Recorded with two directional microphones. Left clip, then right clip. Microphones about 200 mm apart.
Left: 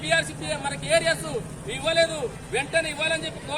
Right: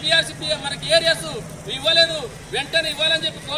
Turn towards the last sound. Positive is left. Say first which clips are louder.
# right 6 dB
turn(degrees=5)  # may be behind; listen again after turning